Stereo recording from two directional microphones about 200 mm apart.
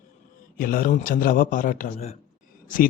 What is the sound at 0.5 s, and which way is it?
A man's voice, 45° left (ahead or behind).